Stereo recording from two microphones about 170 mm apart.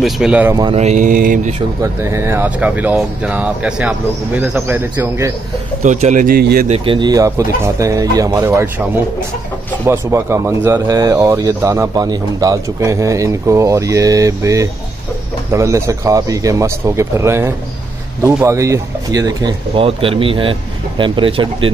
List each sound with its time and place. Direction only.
0.0 s speech: 5° right (ahead or behind)
0.7 s mantra: 45° right (ahead or behind)
1.8 s speech: 15° right (ahead or behind)
5.8 s mantra: 45° right (ahead or behind)
6.2 s speech: 60° right (ahead or behind)
6.7 s speech: 30° right (ahead or behind)
9.8 s speech: 15° right (ahead or behind); by 21.7 s 30° right (ahead or behind)